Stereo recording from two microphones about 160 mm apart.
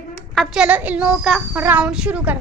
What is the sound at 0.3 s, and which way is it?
A woman's voice, centre (ahead or behind).